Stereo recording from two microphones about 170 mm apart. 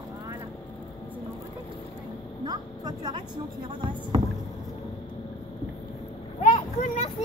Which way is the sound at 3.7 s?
30° right (ahead or behind).